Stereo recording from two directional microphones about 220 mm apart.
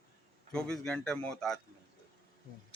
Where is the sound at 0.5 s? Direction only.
5° left (ahead or behind).